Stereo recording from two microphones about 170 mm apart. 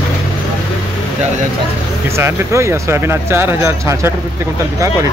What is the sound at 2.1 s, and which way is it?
Speech, 15° right (ahead or behind).